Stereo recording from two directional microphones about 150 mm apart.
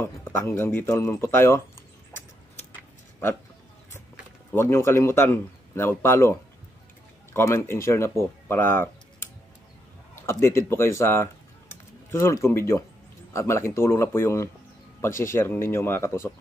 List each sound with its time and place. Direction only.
0.0 s a man's voice: 15° left (ahead or behind)
4.5 s a man's voice: 15° left (ahead or behind)
7.3 s a man's voice: 15° left (ahead or behind)
8.5 s a sound: 15° left (ahead or behind)
10.2 s a man's voice: 15° left (ahead or behind)